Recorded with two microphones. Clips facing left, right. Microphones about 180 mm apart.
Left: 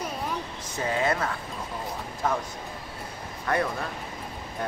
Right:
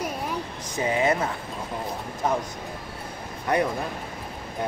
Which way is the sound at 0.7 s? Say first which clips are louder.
Right 3 dB; 15° right (ahead or behind).